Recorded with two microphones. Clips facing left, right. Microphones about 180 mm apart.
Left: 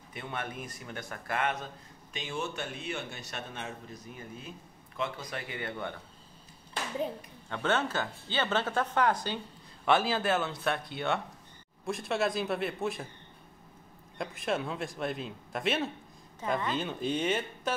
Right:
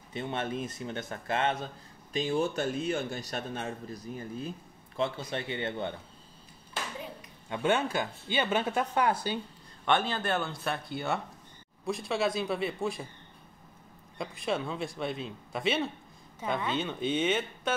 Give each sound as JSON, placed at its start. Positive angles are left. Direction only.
{"t": 0.1, "sound": "a man's voice", "side_deg": -25}
{"t": 7.4, "sound": "speech", "side_deg": -15}
{"t": 9.8, "sound": "a man's voice", "side_deg": 5}
{"t": 14.1, "sound": "a man's voice", "side_deg": 0}